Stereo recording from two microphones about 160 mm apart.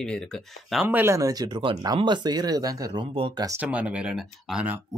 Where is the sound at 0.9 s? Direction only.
15° right (ahead or behind); by 3.5 s 30° right (ahead or behind).